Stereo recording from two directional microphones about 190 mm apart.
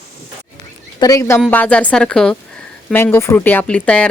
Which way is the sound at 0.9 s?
20° left (ahead or behind).